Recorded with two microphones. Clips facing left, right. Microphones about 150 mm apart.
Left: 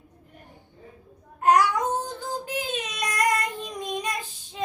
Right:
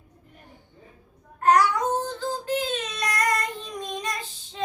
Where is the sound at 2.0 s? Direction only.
15° left (ahead or behind).